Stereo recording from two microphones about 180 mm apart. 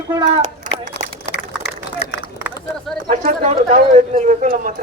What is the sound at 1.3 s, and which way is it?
Run, 70° left (ahead or behind).